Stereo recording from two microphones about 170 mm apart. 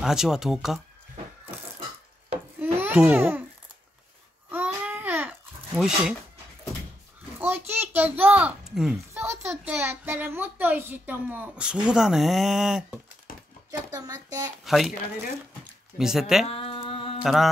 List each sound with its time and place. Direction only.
0.0 s speech: 5° right (ahead or behind)
2.6 s babbling: 10° right (ahead or behind)
4.5 s babbling: 10° right (ahead or behind)
5.8 s speech: 5° right (ahead or behind)
7.3 s a sound: 10° right (ahead or behind)
9.1 s a child's voice: 15° right (ahead or behind)
13.7 s speech: 20° right (ahead or behind)
14.6 s speech: centre (ahead or behind)
16.0 s speech: 5° right (ahead or behind)
16.4 s a sound: 35° left (ahead or behind)
17.2 s mantra: centre (ahead or behind)